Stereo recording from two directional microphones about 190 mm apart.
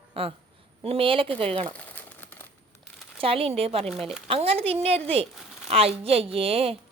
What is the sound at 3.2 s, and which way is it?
A woman's voice, 30° right (ahead or behind).